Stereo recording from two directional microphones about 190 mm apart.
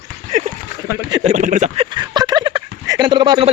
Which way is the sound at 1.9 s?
25° right (ahead or behind).